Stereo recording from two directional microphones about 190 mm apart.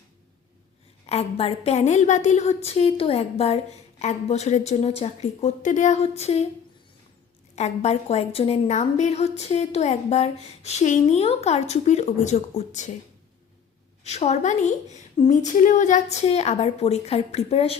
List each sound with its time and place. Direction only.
1.0 s a woman's voice: 35° left (ahead or behind)
7.5 s a woman's voice: 35° left (ahead or behind)
14.0 s a woman's voice: 35° left (ahead or behind)